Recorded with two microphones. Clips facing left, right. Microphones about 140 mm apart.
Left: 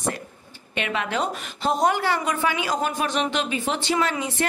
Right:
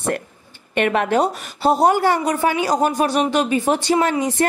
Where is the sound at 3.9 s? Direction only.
45° right (ahead or behind).